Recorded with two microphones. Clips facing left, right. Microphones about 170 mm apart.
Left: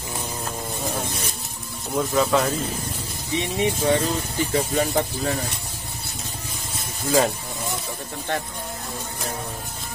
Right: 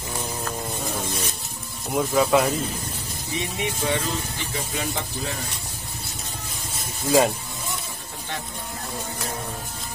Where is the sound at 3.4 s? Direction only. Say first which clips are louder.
Left 5 dB; 30° left (ahead or behind).